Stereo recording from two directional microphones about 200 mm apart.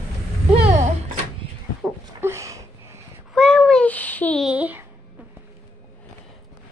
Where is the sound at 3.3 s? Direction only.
5° left (ahead or behind).